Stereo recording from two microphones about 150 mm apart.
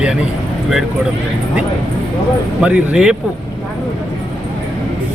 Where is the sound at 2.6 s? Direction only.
5° right (ahead or behind).